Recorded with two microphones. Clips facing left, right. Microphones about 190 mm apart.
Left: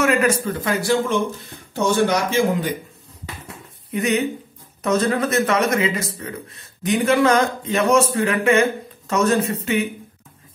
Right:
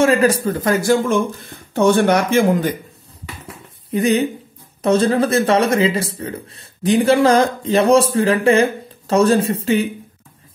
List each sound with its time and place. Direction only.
0.0 s speech: 30° right (ahead or behind)
1.7 s speech: 60° right (ahead or behind)
3.9 s speech: 35° right (ahead or behind)